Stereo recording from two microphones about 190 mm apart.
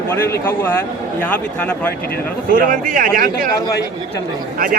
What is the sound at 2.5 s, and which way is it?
Speech, 45° right (ahead or behind).